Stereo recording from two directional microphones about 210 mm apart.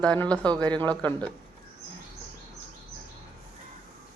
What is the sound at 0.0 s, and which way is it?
Speech, 5° left (ahead or behind).